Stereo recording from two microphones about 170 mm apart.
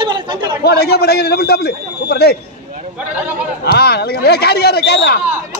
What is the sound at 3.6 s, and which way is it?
A man's voice, 70° left (ahead or behind).